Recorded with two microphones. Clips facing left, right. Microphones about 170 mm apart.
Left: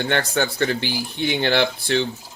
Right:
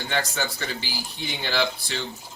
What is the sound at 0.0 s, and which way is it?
Speech, 60° left (ahead or behind).